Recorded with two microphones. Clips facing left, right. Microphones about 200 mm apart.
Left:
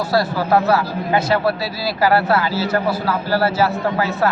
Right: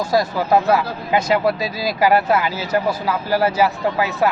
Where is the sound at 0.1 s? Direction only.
15° right (ahead or behind).